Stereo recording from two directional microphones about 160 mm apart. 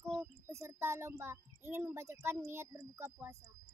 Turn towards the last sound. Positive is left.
turn(degrees=-15)  # may be behind; listen again after turning